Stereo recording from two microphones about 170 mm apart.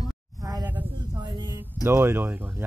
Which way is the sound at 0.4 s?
20° right (ahead or behind).